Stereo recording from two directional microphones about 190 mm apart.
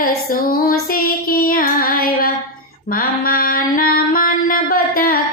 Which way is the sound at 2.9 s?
50° left (ahead or behind).